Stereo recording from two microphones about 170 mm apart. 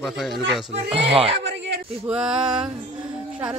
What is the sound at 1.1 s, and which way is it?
Speech, 35° right (ahead or behind).